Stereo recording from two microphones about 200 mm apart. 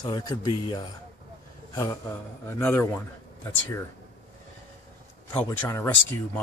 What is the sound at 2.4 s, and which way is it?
Speech, 10° left (ahead or behind).